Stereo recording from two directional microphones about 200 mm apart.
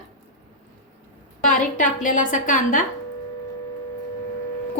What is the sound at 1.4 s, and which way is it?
A woman's voice, 40° left (ahead or behind).